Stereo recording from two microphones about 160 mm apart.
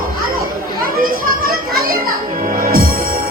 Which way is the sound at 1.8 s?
65° right (ahead or behind).